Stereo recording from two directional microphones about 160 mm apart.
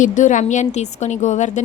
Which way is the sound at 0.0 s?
50° left (ahead or behind).